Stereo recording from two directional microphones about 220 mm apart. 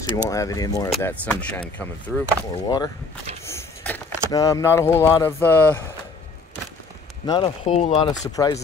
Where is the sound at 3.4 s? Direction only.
10° left (ahead or behind).